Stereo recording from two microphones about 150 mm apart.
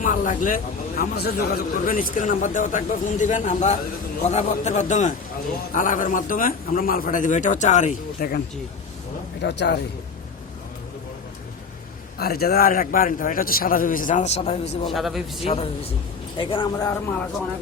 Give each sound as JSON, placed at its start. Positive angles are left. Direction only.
{"t": 0.0, "sound": "a man's voice", "side_deg": 60}
{"t": 12.1, "sound": "a man's voice", "side_deg": 90}
{"t": 14.8, "sound": "a man's voice", "side_deg": 0}
{"t": 15.4, "sound": "a man's voice", "side_deg": 40}